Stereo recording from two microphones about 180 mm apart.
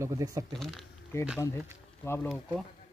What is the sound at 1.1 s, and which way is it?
Speech, 15° left (ahead or behind).